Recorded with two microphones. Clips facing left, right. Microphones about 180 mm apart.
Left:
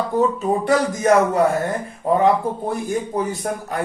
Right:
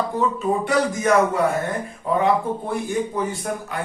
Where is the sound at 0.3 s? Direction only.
40° left (ahead or behind).